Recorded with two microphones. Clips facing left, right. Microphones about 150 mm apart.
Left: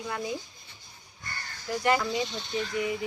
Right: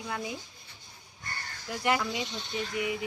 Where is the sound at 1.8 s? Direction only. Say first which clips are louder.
Left 3 dB; 5° right (ahead or behind).